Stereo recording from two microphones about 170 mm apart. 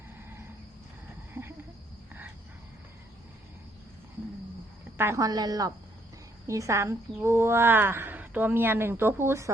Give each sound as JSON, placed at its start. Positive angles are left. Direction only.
{"t": 4.9, "sound": "a woman's voice", "side_deg": -15}